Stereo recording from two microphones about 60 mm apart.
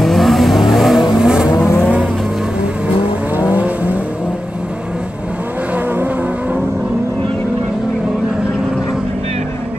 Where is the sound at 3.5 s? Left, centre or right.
Right.